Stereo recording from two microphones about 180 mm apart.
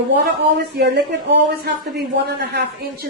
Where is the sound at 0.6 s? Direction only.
65° right (ahead or behind).